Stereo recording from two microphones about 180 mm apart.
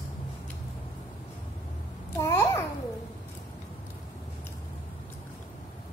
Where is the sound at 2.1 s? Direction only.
15° left (ahead or behind).